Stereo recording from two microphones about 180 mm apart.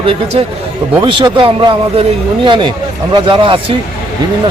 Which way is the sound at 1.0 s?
25° right (ahead or behind).